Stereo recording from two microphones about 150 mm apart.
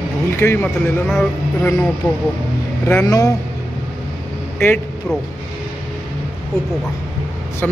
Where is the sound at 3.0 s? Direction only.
20° left (ahead or behind).